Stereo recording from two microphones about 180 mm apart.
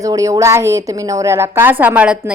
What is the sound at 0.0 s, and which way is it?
A woman's voice, 20° right (ahead or behind).